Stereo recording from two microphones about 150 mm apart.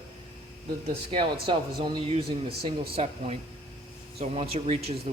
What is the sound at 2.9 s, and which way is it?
A man's voice, 45° right (ahead or behind).